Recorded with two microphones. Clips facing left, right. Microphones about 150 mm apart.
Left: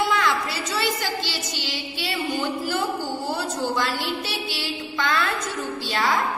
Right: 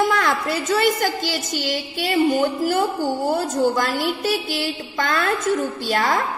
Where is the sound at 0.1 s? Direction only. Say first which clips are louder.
Right 3 dB; 50° right (ahead or behind).